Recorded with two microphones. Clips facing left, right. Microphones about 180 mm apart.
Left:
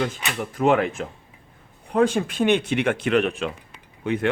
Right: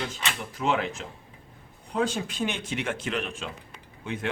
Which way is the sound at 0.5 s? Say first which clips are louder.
Left 8 dB; 55° left (ahead or behind).